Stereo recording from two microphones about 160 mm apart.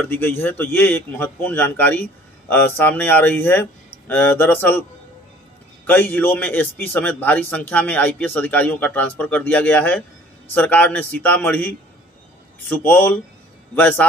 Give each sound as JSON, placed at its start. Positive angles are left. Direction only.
{"t": 0.0, "sound": "a man's voice", "side_deg": 10}
{"t": 5.9, "sound": "a man's voice", "side_deg": 10}